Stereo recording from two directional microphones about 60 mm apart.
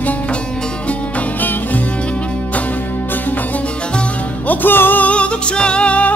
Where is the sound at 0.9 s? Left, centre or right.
Left.